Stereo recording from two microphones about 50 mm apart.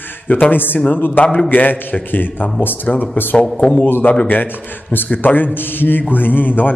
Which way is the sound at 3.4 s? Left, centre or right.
Centre.